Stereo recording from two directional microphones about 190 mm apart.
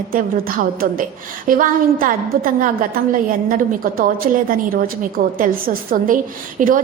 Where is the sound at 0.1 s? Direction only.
50° right (ahead or behind).